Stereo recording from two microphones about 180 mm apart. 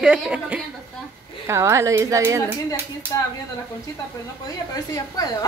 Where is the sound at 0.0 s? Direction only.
5° right (ahead or behind).